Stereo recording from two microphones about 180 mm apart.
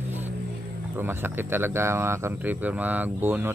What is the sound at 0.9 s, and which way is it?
Speech, 10° right (ahead or behind).